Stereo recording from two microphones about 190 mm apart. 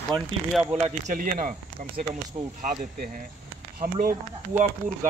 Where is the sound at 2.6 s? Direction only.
45° right (ahead or behind).